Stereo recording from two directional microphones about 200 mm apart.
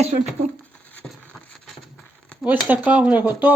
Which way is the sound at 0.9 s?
5° left (ahead or behind).